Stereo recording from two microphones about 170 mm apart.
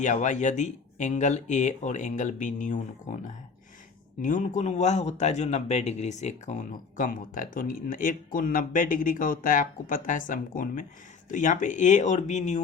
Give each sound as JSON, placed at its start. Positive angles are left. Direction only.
{"t": 0.0, "sound": "speech", "side_deg": 45}